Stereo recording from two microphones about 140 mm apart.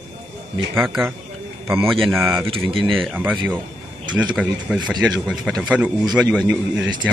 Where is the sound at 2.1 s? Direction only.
20° right (ahead or behind).